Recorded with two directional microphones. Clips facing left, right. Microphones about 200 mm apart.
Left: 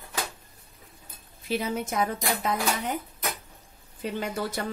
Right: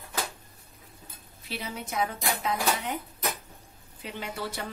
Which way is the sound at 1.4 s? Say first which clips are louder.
Left 8 dB; 45° left (ahead or behind).